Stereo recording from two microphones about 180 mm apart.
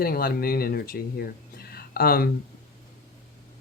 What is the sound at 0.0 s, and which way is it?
Speech, 55° left (ahead or behind).